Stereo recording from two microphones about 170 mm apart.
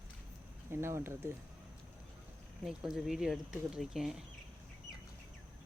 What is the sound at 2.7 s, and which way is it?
Speech, centre (ahead or behind).